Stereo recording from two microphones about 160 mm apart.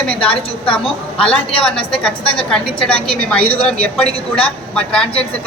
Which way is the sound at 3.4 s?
70° right (ahead or behind).